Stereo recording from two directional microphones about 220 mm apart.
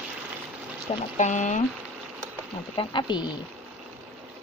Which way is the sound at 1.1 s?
35° left (ahead or behind).